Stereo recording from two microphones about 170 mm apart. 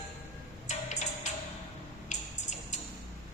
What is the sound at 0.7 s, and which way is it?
Music, 45° left (ahead or behind).